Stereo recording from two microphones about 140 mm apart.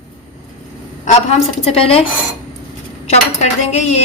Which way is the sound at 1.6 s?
45° left (ahead or behind).